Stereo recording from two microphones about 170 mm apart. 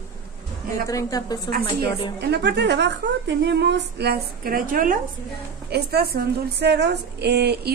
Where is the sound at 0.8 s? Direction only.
20° left (ahead or behind).